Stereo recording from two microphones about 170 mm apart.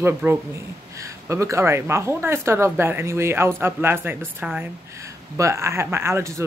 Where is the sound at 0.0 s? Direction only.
15° right (ahead or behind).